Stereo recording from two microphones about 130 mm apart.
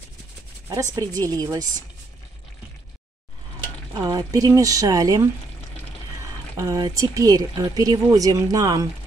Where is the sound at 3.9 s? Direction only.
30° right (ahead or behind).